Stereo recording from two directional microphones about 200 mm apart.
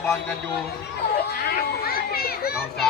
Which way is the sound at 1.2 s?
50° left (ahead or behind).